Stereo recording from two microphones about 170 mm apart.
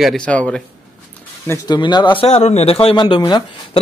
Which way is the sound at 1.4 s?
25° left (ahead or behind).